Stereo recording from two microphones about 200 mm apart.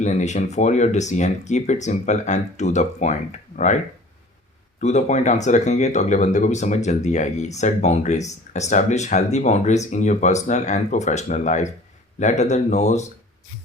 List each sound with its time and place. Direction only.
0.0 s speech: 35° left (ahead or behind)
4.8 s speech: 35° left (ahead or behind)